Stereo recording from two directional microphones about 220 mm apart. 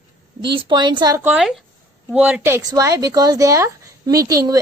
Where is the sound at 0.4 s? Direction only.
20° right (ahead or behind).